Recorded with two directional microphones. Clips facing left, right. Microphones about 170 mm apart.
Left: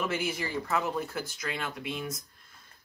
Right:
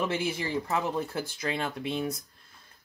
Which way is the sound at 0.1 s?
25° right (ahead or behind).